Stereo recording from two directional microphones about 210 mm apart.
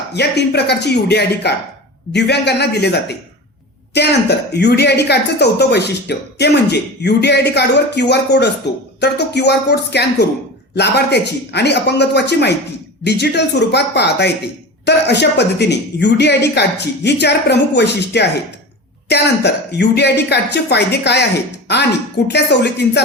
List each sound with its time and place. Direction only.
0.1 s a woman's voice: 50° left (ahead or behind)
22.3 s a woman's voice: 50° left (ahead or behind)